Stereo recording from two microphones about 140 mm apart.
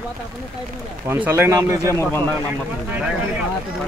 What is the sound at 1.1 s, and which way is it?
Speech, 20° right (ahead or behind).